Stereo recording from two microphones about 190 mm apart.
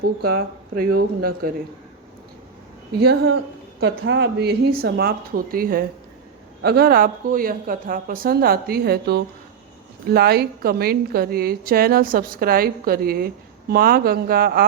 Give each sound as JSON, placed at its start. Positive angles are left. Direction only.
{"t": 0.2, "sound": "a woman's voice", "side_deg": -55}
{"t": 3.0, "sound": "a woman's voice", "side_deg": -60}